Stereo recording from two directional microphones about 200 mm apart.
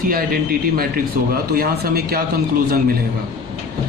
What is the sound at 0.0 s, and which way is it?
Speech, 45° right (ahead or behind).